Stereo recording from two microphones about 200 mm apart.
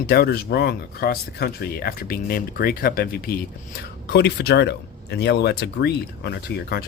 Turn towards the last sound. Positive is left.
turn(degrees=55)  # may be behind; listen again after turning